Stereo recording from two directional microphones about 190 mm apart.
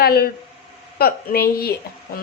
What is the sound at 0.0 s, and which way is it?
Speech, 55° left (ahead or behind).